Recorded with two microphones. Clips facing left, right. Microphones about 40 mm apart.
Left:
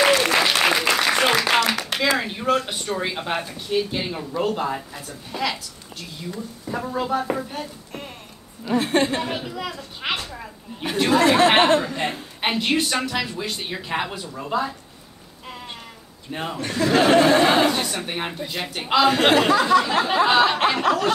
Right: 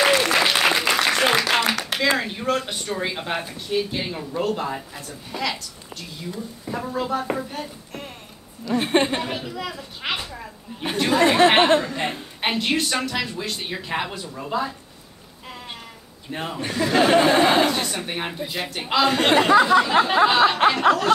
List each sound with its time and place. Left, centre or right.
0.0 s applause: centre
1.7 s clapping: centre
2.1 s a woman's voice: centre
7.3 s a sound: centre
8.7 s a woman's voice: centre
9.2 s a woman's voice: centre
15.4 s a sound: centre
16.3 s a man's voice: centre
19.6 s a sound: centre
20.2 s a woman's voice: centre